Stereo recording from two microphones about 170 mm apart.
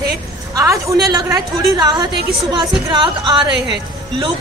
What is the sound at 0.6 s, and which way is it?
A woman's voice, 20° right (ahead or behind).